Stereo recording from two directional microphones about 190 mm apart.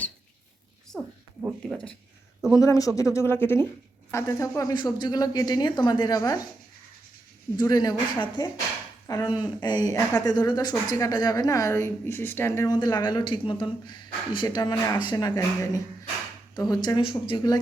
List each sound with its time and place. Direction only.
0.9 s a sound: 5° right (ahead or behind)
2.6 s speech: 15° left (ahead or behind)
7.5 s speech: 20° left (ahead or behind)